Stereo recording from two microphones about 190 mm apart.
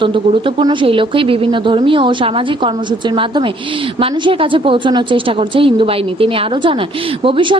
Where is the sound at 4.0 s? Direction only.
25° right (ahead or behind).